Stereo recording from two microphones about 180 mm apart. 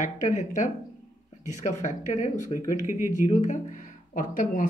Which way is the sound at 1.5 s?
40° left (ahead or behind).